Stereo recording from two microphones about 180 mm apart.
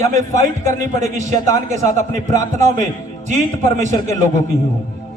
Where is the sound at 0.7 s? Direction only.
45° right (ahead or behind).